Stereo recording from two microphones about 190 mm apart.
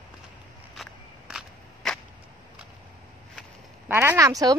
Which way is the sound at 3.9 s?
10° right (ahead or behind).